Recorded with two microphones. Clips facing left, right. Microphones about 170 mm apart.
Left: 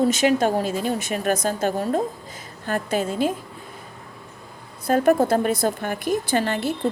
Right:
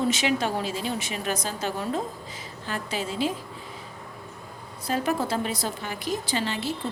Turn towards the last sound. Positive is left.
turn(degrees=55)  # may be behind; listen again after turning